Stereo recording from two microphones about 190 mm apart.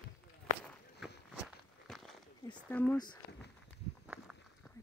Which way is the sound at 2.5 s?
10° left (ahead or behind).